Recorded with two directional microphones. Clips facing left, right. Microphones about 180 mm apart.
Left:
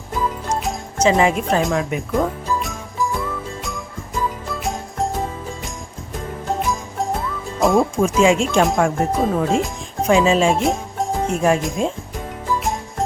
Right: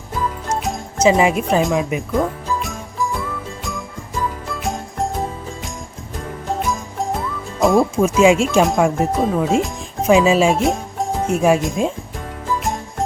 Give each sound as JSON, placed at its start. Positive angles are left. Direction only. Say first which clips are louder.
{"t": 0.4, "sound": "jingle bell", "louder": "right 1 dB", "side_deg": 0}
{"t": 1.0, "sound": "speech", "louder": "right 2 dB", "side_deg": -5}
{"t": 1.9, "sound": "jingle bell", "louder": "right 1 dB", "side_deg": 0}
{"t": 6.6, "sound": "music", "louder": "even", "side_deg": 0}
{"t": 7.6, "sound": "speech", "louder": "right 2 dB", "side_deg": 0}